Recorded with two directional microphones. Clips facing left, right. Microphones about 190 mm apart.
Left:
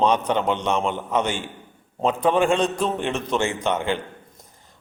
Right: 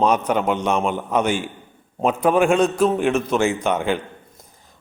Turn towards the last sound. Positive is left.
turn(degrees=-10)  # may be behind; listen again after turning